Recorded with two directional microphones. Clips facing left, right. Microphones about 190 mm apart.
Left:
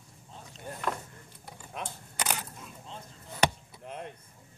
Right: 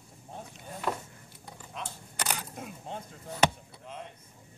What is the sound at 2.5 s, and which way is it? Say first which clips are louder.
Single-lens reflex camera: right 6 dB; 55° right (ahead or behind).